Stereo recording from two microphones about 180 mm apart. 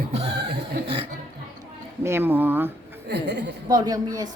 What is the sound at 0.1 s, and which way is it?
Chuckle, 30° right (ahead or behind).